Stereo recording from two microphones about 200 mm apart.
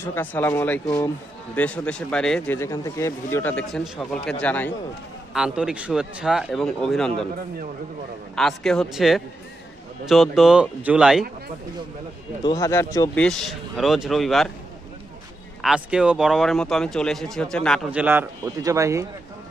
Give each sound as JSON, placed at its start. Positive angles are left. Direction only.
{"t": 0.0, "sound": "speech", "side_deg": 10}
{"t": 5.3, "sound": "speech", "side_deg": -5}
{"t": 8.4, "sound": "speech", "side_deg": 0}
{"t": 12.4, "sound": "speech", "side_deg": 15}
{"t": 13.2, "sound": "speech", "side_deg": 5}
{"t": 15.6, "sound": "speech", "side_deg": -5}
{"t": 18.0, "sound": "speech", "side_deg": -10}